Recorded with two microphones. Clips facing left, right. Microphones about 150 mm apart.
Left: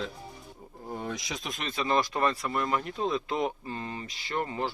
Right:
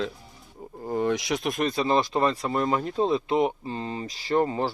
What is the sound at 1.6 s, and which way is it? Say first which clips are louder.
Speech: right 3 dB; 35° right (ahead or behind).